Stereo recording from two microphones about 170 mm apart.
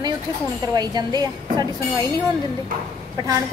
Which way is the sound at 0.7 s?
25° right (ahead or behind).